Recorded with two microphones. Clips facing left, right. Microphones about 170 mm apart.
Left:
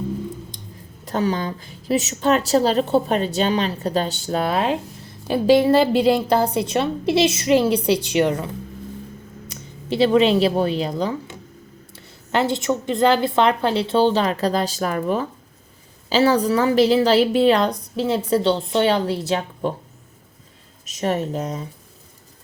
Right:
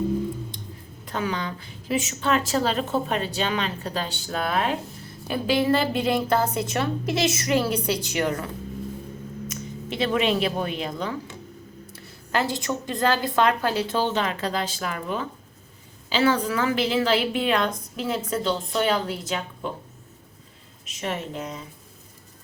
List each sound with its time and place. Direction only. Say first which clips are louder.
1.0 s a woman's voice: left 6 dB; 40° left (ahead or behind)
9.5 s speech: left 9 dB; 30° left (ahead or behind)
12.3 s a woman's voice: left 5 dB; 25° left (ahead or behind)
20.8 s speech: left 8 dB; 40° left (ahead or behind)